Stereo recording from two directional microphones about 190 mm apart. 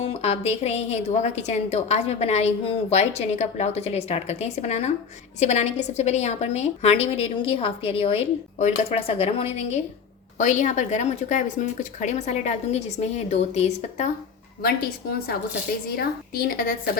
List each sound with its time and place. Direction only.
0.0 s a woman's voice: 35° left (ahead or behind)
16.0 s a woman's voice: 50° left (ahead or behind)